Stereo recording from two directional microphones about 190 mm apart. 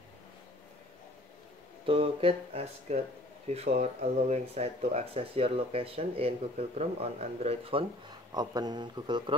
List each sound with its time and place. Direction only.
1.9 s speech: 30° right (ahead or behind)
8.4 s speech: 20° right (ahead or behind)